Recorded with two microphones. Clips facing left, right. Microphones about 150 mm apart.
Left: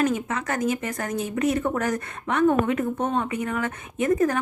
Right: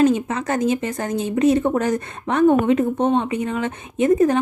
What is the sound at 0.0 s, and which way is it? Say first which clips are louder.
Speech: right 7 dB; 30° right (ahead or behind).